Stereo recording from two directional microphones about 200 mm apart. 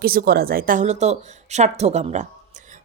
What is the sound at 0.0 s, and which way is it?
A woman's voice, 50° right (ahead or behind).